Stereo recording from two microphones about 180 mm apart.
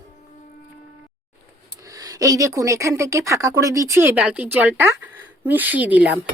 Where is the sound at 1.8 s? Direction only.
20° right (ahead or behind).